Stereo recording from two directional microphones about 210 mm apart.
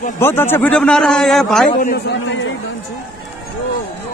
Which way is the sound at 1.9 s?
60° left (ahead or behind).